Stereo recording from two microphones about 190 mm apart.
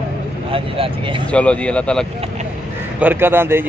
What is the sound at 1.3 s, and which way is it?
Speech, 5° left (ahead or behind).